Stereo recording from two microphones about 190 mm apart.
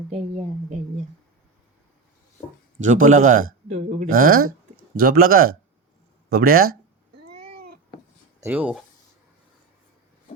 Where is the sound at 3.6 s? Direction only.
40° right (ahead or behind).